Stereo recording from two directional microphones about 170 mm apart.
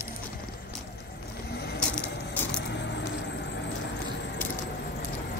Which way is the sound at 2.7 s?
90° left.